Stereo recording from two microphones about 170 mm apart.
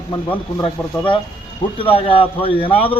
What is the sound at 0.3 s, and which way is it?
A man's voice, 30° left (ahead or behind).